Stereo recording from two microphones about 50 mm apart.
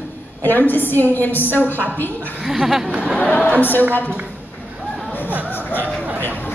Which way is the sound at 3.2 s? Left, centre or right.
Left.